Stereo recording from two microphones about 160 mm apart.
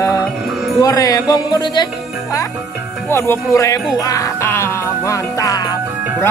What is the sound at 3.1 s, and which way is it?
Music, 15° left (ahead or behind).